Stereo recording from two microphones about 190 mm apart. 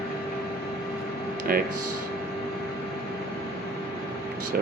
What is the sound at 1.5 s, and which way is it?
Speech, 50° right (ahead or behind).